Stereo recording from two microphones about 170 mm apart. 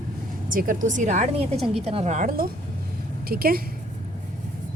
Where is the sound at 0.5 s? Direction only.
55° right (ahead or behind).